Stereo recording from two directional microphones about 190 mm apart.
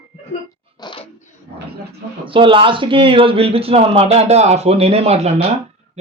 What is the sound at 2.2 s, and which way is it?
Speech, 25° right (ahead or behind).